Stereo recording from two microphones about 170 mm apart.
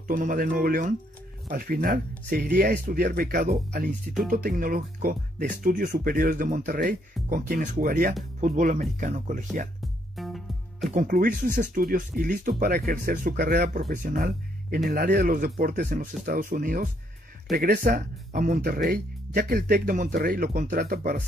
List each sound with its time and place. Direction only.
0.1 s speech: 55° right (ahead or behind)
9.8 s music: centre (ahead or behind)
10.9 s speech: 55° right (ahead or behind)